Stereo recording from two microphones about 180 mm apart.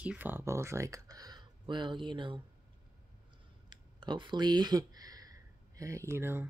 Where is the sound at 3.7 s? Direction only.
25° right (ahead or behind).